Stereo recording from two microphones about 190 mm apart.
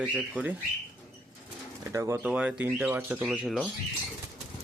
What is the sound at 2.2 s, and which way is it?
Speech, 5° right (ahead or behind).